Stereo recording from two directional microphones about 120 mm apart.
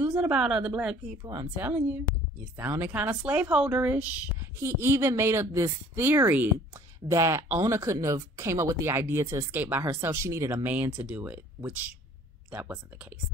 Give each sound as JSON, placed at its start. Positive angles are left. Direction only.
{"t": 0.2, "sound": "speech", "side_deg": -10}
{"t": 1.2, "sound": "speech", "side_deg": -35}
{"t": 1.6, "sound": "speech", "side_deg": -15}